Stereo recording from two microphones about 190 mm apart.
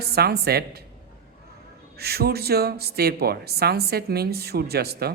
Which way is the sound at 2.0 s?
55° right (ahead or behind).